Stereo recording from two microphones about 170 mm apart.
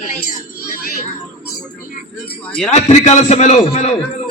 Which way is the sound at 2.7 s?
40° left (ahead or behind).